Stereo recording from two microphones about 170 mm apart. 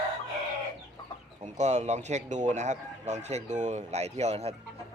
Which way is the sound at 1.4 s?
45° right (ahead or behind).